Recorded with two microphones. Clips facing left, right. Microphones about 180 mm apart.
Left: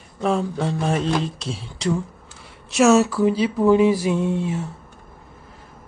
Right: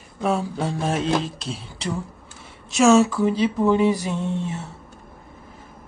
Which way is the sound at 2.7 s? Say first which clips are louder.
Even; centre (ahead or behind).